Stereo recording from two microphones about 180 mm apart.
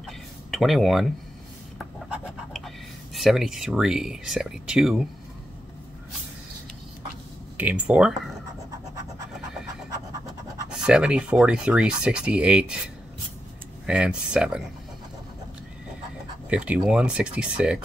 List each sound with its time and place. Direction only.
0.0 s a sound: centre (ahead or behind)
2.0 s scratch: 5° right (ahead or behind)
3.2 s speech: centre (ahead or behind)
7.5 s speech: 10° right (ahead or behind)
10.9 s speech: 5° right (ahead or behind)
13.8 s speech: 5° right (ahead or behind)
16.4 s speech: 5° right (ahead or behind)